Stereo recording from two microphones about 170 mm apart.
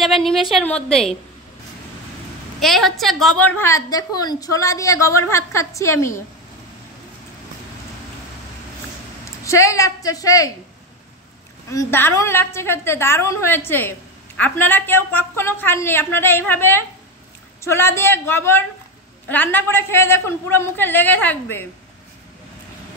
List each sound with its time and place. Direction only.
0.0 s a woman's voice: centre (ahead or behind)
2.6 s a woman's voice: centre (ahead or behind); by 6.2 s 15° left (ahead or behind)
9.2 s speech: 20° left (ahead or behind)
11.7 s a woman's voice: 15° left (ahead or behind)